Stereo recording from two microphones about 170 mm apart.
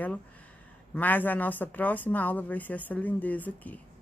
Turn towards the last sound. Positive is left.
turn(degrees=10)  # may be behind; listen again after turning